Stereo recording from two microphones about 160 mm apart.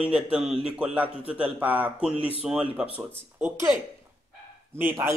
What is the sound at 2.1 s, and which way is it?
Speech, 35° left (ahead or behind).